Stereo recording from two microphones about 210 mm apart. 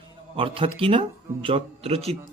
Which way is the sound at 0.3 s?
25° right (ahead or behind).